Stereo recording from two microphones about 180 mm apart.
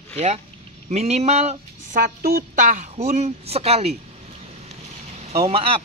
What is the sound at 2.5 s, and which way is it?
Speech, 45° right (ahead or behind).